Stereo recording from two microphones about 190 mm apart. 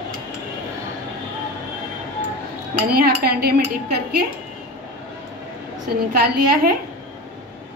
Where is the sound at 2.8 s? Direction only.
50° right (ahead or behind).